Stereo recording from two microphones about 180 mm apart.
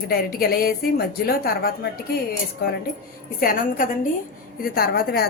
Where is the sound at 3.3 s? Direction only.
50° left (ahead or behind).